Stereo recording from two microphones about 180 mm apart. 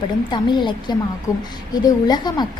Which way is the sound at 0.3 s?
25° left (ahead or behind).